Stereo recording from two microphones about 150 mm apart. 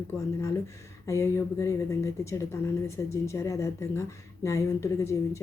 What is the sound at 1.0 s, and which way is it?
Speech, 20° left (ahead or behind).